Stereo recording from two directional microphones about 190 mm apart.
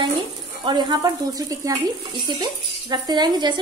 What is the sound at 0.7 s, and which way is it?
A woman's voice, 25° right (ahead or behind).